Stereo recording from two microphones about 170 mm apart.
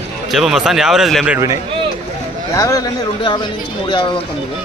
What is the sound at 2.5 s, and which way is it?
Speech, 20° left (ahead or behind).